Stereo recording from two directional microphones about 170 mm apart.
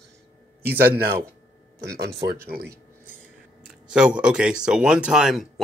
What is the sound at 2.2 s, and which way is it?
Speech, 70° right (ahead or behind).